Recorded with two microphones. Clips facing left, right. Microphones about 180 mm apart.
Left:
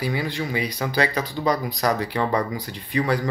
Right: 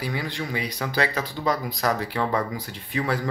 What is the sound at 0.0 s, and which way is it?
Speech, centre (ahead or behind).